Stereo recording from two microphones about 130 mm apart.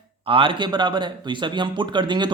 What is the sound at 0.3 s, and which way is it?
Speech, 40° right (ahead or behind).